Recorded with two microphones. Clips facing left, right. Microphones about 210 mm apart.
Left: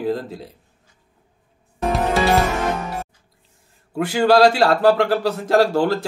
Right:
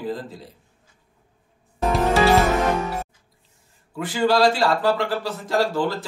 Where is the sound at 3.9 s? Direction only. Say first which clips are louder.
Left 5 dB; 70° left (ahead or behind).